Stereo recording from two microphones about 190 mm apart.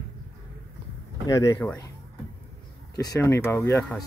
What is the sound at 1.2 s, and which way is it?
Speech, 15° left (ahead or behind).